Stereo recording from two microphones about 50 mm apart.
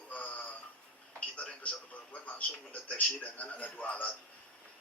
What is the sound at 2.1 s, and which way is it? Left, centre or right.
A man's voice, left.